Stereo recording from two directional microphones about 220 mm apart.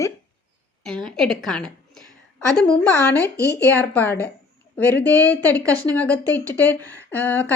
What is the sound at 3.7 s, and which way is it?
Speech, 10° left (ahead or behind).